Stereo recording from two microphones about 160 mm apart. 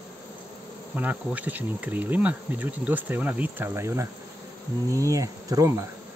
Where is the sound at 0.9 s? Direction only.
10° right (ahead or behind).